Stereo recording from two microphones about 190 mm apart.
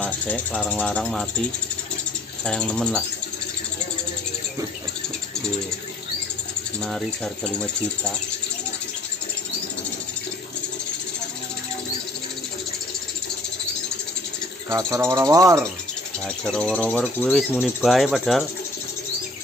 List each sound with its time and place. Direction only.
0.0 s speech: 5° left (ahead or behind)
2.4 s speech: 5° left (ahead or behind)
7.5 s speech: 5° left (ahead or behind)
14.9 s insect: 15° right (ahead or behind)
16.4 s speech: 5° left (ahead or behind)